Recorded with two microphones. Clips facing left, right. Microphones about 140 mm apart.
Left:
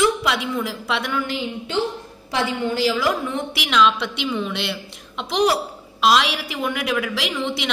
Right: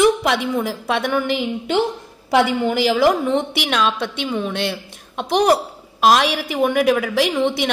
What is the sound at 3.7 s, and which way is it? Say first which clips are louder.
Speech: left 3 dB; 45° right (ahead or behind).